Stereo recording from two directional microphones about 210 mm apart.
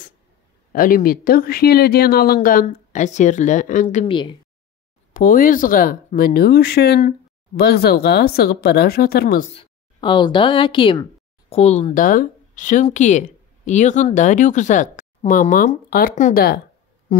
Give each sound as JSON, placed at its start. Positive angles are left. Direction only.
{"t": 0.7, "sound": "speech", "side_deg": 40}
{"t": 5.1, "sound": "speech", "side_deg": 40}
{"t": 9.5, "sound": "a woman's voice", "side_deg": 25}